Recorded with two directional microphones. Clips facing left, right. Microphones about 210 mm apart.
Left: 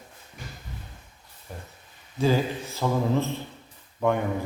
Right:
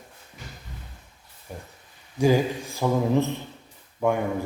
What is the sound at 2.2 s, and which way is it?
A man's voice, 15° right (ahead or behind).